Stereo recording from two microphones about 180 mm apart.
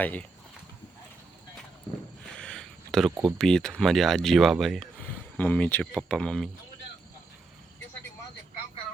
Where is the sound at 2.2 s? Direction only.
5° left (ahead or behind).